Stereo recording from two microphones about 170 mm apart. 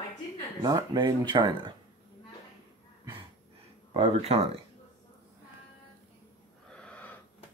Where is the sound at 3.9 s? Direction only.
40° right (ahead or behind).